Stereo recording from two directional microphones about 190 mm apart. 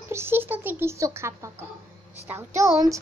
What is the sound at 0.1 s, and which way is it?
A child's voice, 10° right (ahead or behind).